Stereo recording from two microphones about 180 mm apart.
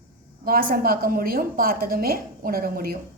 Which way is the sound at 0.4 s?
55° right (ahead or behind).